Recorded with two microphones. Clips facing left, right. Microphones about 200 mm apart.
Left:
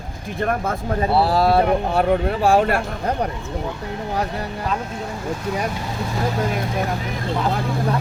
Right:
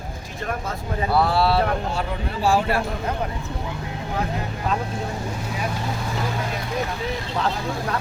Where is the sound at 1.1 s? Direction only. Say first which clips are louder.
Left 2 dB; 30° left (ahead or behind); by 2.8 s 55° left (ahead or behind).